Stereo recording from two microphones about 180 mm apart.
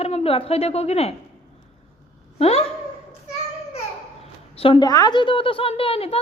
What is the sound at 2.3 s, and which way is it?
Speech, 35° left (ahead or behind).